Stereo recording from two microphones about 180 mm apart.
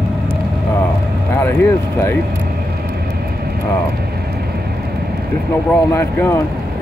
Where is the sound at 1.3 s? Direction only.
15° left (ahead or behind).